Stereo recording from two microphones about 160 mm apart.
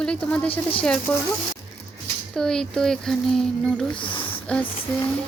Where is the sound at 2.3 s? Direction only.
5° left (ahead or behind).